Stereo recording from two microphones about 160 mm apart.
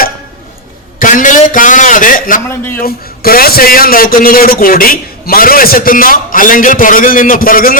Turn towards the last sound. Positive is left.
turn(degrees=60)  # may be behind; listen again after turning